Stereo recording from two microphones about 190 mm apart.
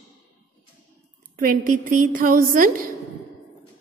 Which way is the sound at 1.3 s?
45° right (ahead or behind).